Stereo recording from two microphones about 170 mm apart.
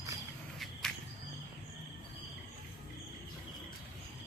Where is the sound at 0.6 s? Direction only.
Centre (ahead or behind).